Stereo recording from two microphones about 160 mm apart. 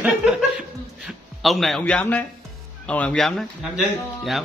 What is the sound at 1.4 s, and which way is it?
Speech, centre (ahead or behind).